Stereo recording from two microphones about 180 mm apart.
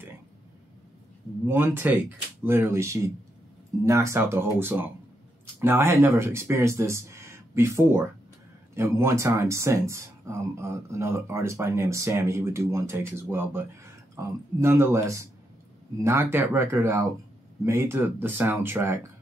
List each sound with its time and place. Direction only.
1.5 s speech: 15° right (ahead or behind)